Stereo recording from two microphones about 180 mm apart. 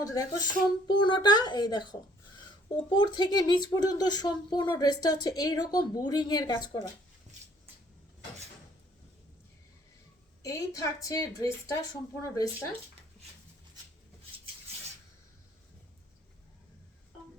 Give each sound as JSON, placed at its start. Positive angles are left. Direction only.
{"t": 0.0, "sound": "speech", "side_deg": 20}
{"t": 10.4, "sound": "speech", "side_deg": 20}